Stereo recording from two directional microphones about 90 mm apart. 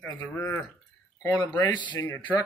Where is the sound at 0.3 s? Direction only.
25° left (ahead or behind).